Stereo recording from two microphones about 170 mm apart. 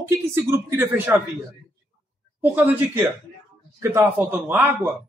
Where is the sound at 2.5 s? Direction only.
10° right (ahead or behind).